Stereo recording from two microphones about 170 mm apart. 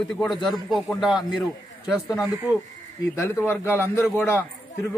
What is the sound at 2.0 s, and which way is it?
A man's voice, 20° left (ahead or behind).